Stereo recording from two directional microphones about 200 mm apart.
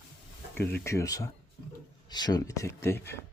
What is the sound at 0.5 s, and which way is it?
Speech, 10° left (ahead or behind).